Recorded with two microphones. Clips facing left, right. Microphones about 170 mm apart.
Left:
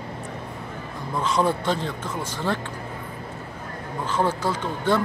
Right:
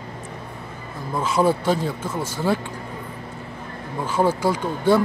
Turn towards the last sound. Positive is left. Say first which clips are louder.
# right 4 dB
turn(degrees=-10)  # may be behind; listen again after turning